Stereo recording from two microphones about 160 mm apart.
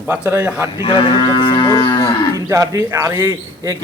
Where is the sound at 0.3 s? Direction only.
10° right (ahead or behind).